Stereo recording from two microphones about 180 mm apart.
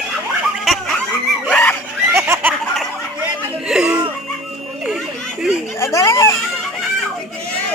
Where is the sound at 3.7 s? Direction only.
5° right (ahead or behind).